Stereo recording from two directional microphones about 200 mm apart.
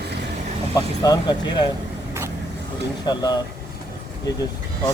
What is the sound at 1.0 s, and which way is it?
Speech, 20° left (ahead or behind).